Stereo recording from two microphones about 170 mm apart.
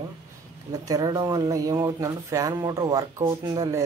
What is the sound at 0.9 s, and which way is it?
Speech, 20° right (ahead or behind).